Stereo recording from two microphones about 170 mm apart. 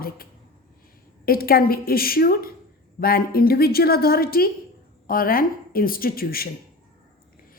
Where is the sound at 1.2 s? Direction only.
60° left (ahead or behind).